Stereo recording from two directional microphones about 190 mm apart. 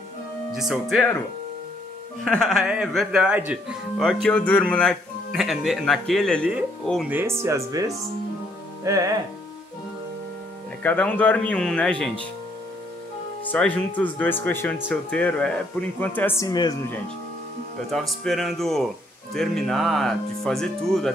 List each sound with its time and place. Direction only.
0.5 s speech: centre (ahead or behind)
2.2 s speech: centre (ahead or behind)
7.1 s speech: 10° right (ahead or behind)
10.8 s speech: 10° left (ahead or behind)
13.4 s speech: 10° left (ahead or behind)
17.9 s speech: centre (ahead or behind)